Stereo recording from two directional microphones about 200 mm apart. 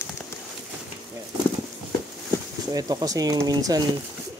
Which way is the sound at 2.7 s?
20° right (ahead or behind).